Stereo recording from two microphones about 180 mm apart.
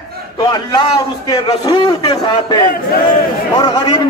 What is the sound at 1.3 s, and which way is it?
A man's voice, 25° left (ahead or behind).